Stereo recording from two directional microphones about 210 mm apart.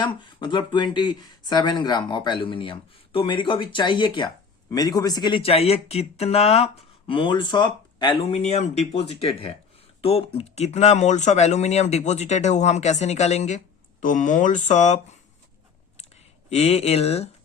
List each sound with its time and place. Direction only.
0.0 s speech: 20° left (ahead or behind)
16.5 s speech: 30° left (ahead or behind)